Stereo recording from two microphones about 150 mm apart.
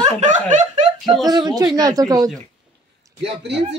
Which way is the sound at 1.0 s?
Centre (ahead or behind).